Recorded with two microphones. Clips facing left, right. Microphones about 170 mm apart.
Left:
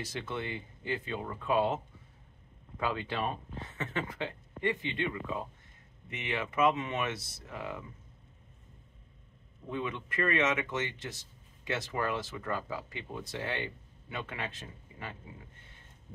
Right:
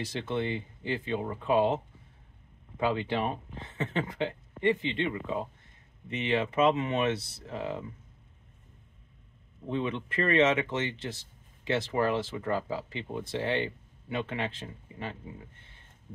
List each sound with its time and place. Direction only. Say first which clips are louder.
0.1 s speech: right 8 dB; 25° right (ahead or behind)
2.8 s speech: right 5 dB; 25° right (ahead or behind)
9.7 s speech: right 5 dB; 25° right (ahead or behind)